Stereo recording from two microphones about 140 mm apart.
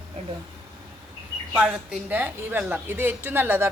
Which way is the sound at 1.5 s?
5° right (ahead or behind).